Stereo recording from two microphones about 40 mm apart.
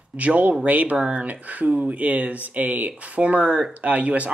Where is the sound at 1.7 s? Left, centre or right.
Right.